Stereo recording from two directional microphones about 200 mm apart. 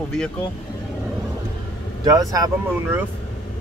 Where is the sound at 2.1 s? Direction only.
20° right (ahead or behind).